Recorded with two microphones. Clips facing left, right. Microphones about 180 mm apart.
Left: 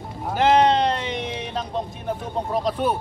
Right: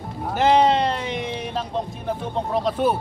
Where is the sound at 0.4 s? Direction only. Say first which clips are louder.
Even; 5° right (ahead or behind).